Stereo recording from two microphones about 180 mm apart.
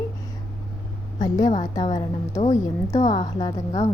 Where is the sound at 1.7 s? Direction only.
25° left (ahead or behind).